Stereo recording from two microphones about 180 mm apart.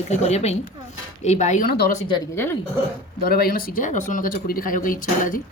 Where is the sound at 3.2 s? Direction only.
60° left (ahead or behind).